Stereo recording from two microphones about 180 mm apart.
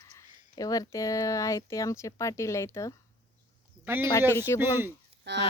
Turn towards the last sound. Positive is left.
turn(degrees=-70)  # may be behind; listen again after turning